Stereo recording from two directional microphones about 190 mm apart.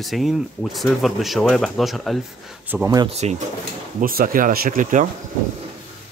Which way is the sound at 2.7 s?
10° right (ahead or behind).